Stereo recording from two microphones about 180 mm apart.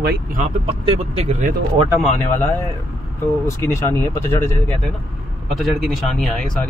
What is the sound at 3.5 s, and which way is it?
Speech, 15° left (ahead or behind).